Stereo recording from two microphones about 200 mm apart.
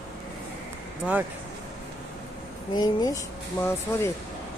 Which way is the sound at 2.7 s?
20° left (ahead or behind).